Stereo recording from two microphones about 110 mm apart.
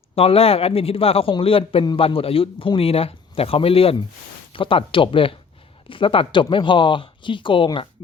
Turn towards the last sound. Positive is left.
turn(degrees=50)  # may be behind; listen again after turning